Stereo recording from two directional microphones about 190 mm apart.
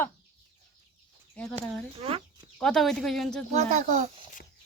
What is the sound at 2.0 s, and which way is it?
Speech, 30° right (ahead or behind).